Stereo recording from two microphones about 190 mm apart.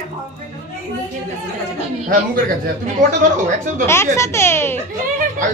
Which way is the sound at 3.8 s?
15° left (ahead or behind).